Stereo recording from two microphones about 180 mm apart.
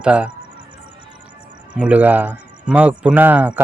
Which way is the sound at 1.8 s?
10° right (ahead or behind).